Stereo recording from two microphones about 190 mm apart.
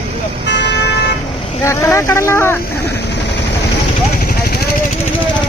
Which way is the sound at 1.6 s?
15° left (ahead or behind).